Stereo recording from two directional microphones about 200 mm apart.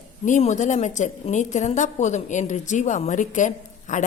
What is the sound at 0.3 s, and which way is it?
A woman's voice, 35° left (ahead or behind).